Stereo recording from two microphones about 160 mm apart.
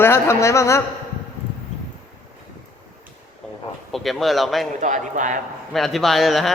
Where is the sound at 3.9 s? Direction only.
Centre (ahead or behind).